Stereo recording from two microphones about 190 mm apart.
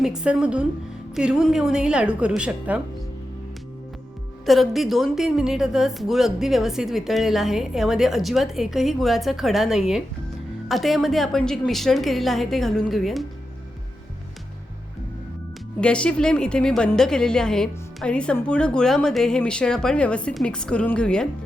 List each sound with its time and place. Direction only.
0.0 s a woman's voice: 5° right (ahead or behind)
4.4 s a woman's voice: centre (ahead or behind)
15.8 s a woman's voice: 5° left (ahead or behind)